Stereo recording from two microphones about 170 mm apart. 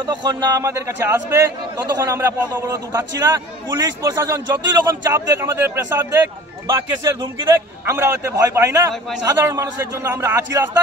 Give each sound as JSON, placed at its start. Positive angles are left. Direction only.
{"t": 0.0, "sound": "a man's voice", "side_deg": -25}